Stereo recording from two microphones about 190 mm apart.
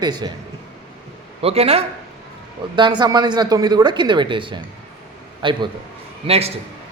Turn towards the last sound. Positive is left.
turn(degrees=-30)  # may be behind; listen again after turning